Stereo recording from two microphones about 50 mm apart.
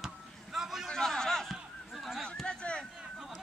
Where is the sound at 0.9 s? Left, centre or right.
Centre.